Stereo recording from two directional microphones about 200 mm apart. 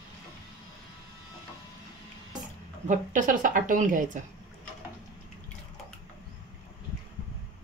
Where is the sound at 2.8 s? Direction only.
40° right (ahead or behind).